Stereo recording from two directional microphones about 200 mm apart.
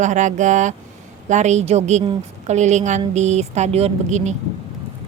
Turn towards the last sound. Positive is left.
turn(degrees=-35)  # may be behind; listen again after turning